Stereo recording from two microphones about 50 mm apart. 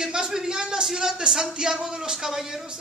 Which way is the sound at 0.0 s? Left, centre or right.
Centre.